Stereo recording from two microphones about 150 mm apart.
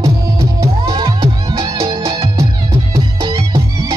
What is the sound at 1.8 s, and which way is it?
Music, 20° right (ahead or behind).